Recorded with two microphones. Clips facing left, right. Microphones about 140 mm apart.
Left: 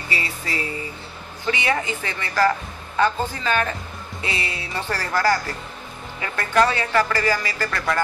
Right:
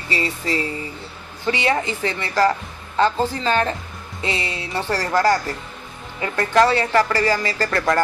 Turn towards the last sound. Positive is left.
turn(degrees=-35)  # may be behind; listen again after turning